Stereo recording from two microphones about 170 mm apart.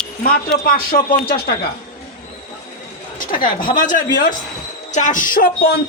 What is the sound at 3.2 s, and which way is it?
Speech, 55° left (ahead or behind).